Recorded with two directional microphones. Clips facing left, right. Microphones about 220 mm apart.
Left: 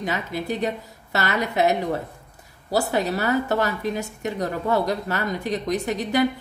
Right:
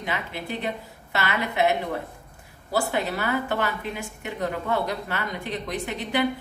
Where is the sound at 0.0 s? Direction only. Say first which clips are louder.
Left 4 dB; 40° left (ahead or behind).